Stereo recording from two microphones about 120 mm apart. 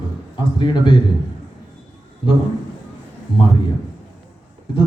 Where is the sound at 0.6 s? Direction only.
40° left (ahead or behind).